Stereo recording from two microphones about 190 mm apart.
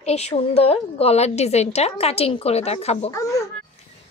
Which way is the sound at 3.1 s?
15° left (ahead or behind).